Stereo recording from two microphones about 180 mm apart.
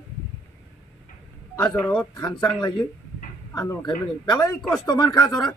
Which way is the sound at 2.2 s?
25° left (ahead or behind).